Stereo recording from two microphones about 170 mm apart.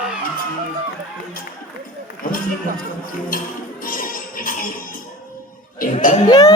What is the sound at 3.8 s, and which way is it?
Music, 55° left (ahead or behind).